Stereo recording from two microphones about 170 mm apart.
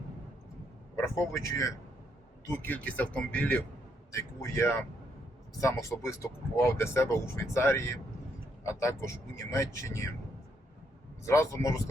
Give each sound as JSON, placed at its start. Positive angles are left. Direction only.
{"t": 1.0, "sound": "speech", "side_deg": 15}
{"t": 11.3, "sound": "speech", "side_deg": 15}